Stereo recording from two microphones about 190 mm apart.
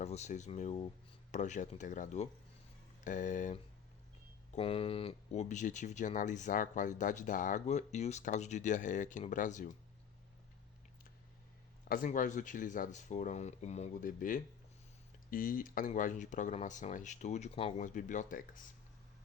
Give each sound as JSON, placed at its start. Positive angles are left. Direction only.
{"t": 0.0, "sound": "speech", "side_deg": 35}
{"t": 4.5, "sound": "speech", "side_deg": 30}
{"t": 11.9, "sound": "speech", "side_deg": 45}